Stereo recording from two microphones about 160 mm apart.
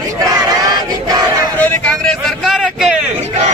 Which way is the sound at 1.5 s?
10° left (ahead or behind).